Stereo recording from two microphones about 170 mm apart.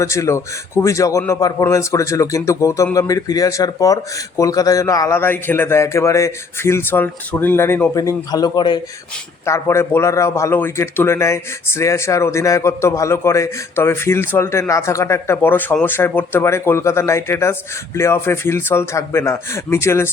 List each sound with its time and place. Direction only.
0.0 s speech: 15° left (ahead or behind)
9.5 s speech: 15° left (ahead or behind)